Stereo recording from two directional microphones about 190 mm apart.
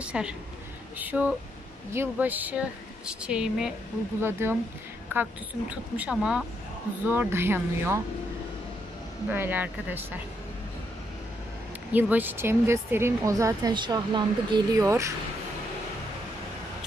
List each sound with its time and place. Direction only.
0.0 s a woman's voice: 5° right (ahead or behind)
9.3 s a woman's voice: 10° right (ahead or behind)
11.9 s a woman's voice: 10° right (ahead or behind)